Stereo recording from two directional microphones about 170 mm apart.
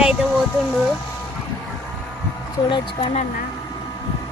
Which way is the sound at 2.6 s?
30° left (ahead or behind).